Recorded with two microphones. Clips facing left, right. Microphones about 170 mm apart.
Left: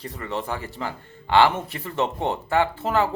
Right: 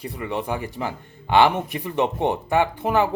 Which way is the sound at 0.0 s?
10° right (ahead or behind).